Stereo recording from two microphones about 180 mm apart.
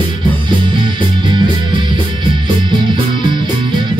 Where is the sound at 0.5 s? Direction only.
25° right (ahead or behind).